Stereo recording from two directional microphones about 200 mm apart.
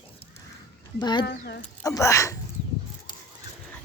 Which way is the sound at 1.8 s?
15° left (ahead or behind).